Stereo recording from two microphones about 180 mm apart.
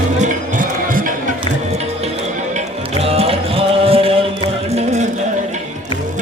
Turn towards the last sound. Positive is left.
turn(degrees=-40)  # may be behind; listen again after turning